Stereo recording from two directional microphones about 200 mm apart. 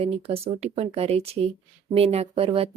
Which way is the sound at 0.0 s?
30° right (ahead or behind).